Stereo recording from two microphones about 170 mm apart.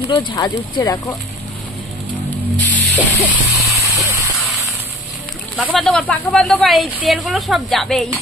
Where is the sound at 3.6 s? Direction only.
20° right (ahead or behind).